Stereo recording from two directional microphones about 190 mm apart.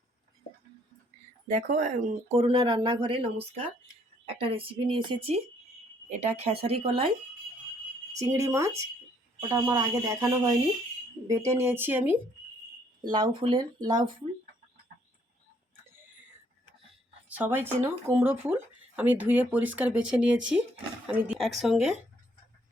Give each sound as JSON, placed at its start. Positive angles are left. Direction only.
{"t": 1.5, "sound": "speech", "side_deg": -40}
{"t": 8.1, "sound": "speech", "side_deg": -15}
{"t": 13.0, "sound": "speech", "side_deg": -20}
{"t": 17.2, "sound": "speech", "side_deg": -10}